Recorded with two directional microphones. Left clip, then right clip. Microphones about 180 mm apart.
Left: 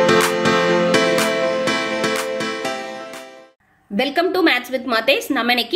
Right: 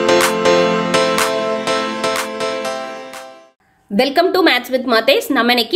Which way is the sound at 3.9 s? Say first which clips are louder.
Right 5 dB; 25° right (ahead or behind).